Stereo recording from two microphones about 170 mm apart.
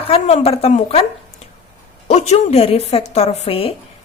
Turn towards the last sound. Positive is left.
turn(degrees=35)  # may be behind; listen again after turning